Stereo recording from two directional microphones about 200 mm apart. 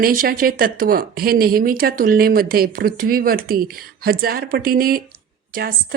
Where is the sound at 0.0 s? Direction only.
45° right (ahead or behind).